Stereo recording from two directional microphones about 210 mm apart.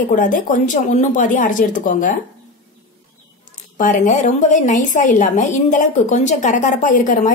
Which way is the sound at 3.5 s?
35° left (ahead or behind).